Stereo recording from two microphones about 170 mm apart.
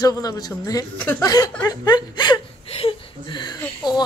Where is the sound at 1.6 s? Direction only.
25° left (ahead or behind).